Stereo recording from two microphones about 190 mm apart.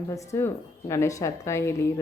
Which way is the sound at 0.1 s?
15° left (ahead or behind).